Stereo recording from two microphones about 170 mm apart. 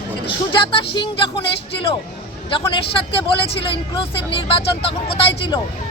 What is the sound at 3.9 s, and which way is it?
Speech, 30° left (ahead or behind).